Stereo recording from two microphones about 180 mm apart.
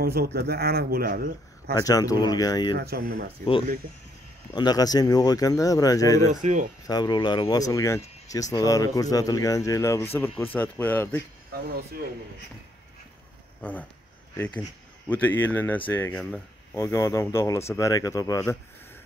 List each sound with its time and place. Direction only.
0.0 s a man's voice: 60° right (ahead or behind)
1.7 s speech: 20° left (ahead or behind)
2.8 s a man's voice: 60° right (ahead or behind)
4.6 s speech: 20° left (ahead or behind)
6.4 s speech: 45° right (ahead or behind)
6.9 s speech: 25° left (ahead or behind)
13.6 s speech: 10° left (ahead or behind)